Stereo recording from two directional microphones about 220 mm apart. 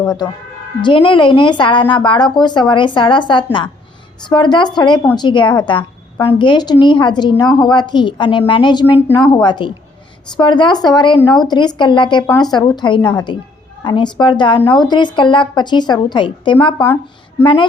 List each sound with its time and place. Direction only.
0.8 s a woman's voice: 20° left (ahead or behind)
9.0 s a woman's voice: 10° left (ahead or behind)
9.2 s a woman's voice: 20° left (ahead or behind)